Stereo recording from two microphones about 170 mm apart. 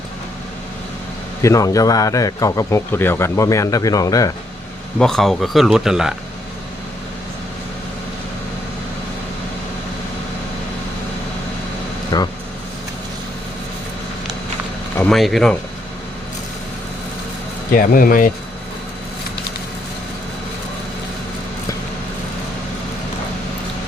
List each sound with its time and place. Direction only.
1.4 s a man's voice: 20° left (ahead or behind)
4.9 s speech: 5° left (ahead or behind)
12.1 s speech: 20° left (ahead or behind)
14.9 s speech: 5° left (ahead or behind)
17.7 s speech: 55° left (ahead or behind)